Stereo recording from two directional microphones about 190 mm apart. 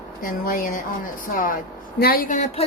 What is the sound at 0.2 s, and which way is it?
A woman's voice, 50° left (ahead or behind).